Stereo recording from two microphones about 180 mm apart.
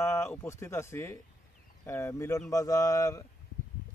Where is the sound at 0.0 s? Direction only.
15° left (ahead or behind).